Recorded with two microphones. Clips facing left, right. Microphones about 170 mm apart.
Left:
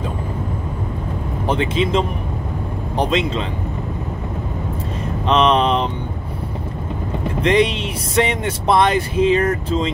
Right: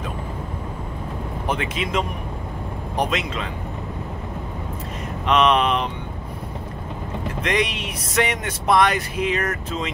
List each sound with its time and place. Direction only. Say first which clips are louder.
1.5 s speech: left 7 dB; 30° left (ahead or behind)
5.2 s speech: left 2 dB; 30° left (ahead or behind)
7.4 s speech: left 8 dB; 30° left (ahead or behind)